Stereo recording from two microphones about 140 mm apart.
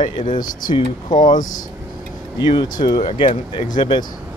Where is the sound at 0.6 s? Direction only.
30° left (ahead or behind).